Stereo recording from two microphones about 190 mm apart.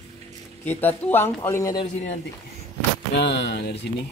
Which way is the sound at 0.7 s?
10° left (ahead or behind).